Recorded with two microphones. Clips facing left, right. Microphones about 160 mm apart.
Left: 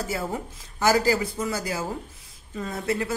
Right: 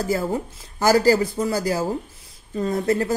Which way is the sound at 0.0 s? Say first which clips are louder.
Right 6 dB; 35° right (ahead or behind).